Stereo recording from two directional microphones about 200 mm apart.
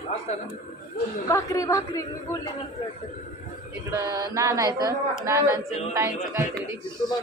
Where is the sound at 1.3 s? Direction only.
15° left (ahead or behind).